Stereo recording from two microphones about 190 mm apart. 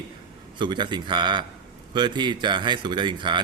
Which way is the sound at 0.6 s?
25° right (ahead or behind).